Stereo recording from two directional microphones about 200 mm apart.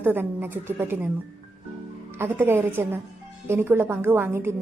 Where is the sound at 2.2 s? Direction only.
10° right (ahead or behind).